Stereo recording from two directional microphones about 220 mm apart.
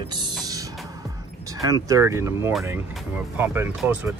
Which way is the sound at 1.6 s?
15° right (ahead or behind).